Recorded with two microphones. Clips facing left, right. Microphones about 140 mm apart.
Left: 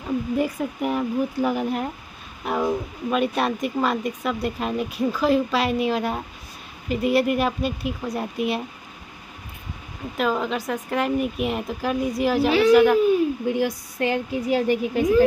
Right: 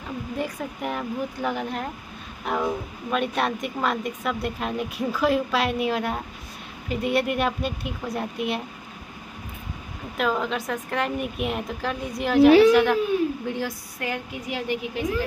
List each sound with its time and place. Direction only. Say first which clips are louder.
0.4 s speech: left 5 dB; 5° left (ahead or behind)
10.1 s speech: left 1 dB; centre (ahead or behind)
13.5 s speech: left 6 dB; 15° left (ahead or behind)
13.9 s speech: left 9 dB; 30° left (ahead or behind)
15.0 s a woman's voice: left 6 dB; 45° left (ahead or behind)